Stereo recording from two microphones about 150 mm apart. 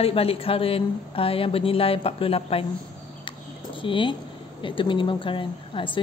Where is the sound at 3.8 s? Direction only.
35° left (ahead or behind).